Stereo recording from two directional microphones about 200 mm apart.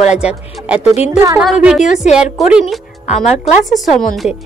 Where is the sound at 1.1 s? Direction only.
15° right (ahead or behind).